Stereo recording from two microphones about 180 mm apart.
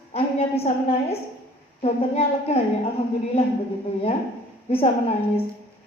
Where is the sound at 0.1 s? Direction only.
35° left (ahead or behind).